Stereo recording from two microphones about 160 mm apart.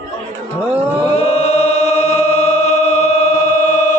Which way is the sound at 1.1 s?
40° left (ahead or behind).